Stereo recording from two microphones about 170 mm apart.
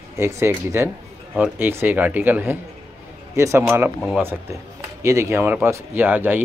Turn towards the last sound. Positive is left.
turn(degrees=-10)  # may be behind; listen again after turning